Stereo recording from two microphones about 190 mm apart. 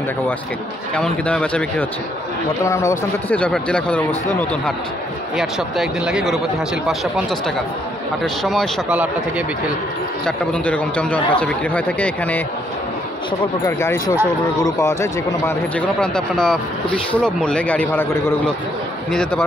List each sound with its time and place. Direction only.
0.9 s speech: 5° left (ahead or behind)
5.4 s speech: centre (ahead or behind)
8.2 s speech: centre (ahead or behind)
10.2 s speech: 5° left (ahead or behind)
14.6 s speech: 15° left (ahead or behind)